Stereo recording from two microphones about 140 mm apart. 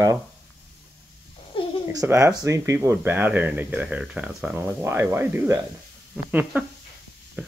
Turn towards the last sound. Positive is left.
turn(degrees=-10)  # may be behind; listen again after turning